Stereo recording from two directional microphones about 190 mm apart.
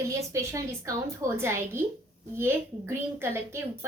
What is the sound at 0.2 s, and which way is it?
A woman's voice, 15° right (ahead or behind).